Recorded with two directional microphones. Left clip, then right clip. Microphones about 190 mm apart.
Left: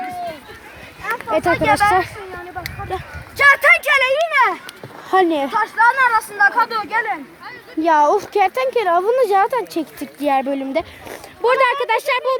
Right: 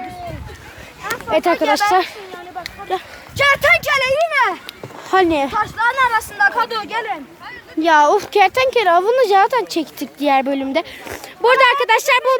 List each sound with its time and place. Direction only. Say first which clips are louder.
1.0 s a sound: right 1 dB; centre (ahead or behind)
2.9 s speech: right 7 dB; 30° right (ahead or behind)
3.8 s a child's voice: even; 10° right (ahead or behind)
5.1 s speech: right 1 dB; centre (ahead or behind)
5.5 s speech: left 6 dB; 40° right (ahead or behind)
7.8 s a woman's voice: right 2 dB; 5° left (ahead or behind); by 12.4 s 15° right (ahead or behind)